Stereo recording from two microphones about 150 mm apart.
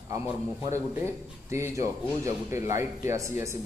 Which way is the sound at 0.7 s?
20° right (ahead or behind).